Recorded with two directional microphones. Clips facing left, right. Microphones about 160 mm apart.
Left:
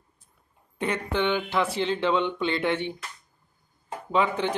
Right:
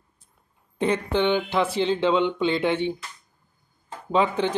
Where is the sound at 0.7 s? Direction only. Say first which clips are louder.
Right 4 dB; 25° right (ahead or behind).